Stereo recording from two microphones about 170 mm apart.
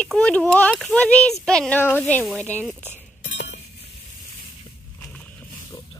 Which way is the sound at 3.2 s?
90° left.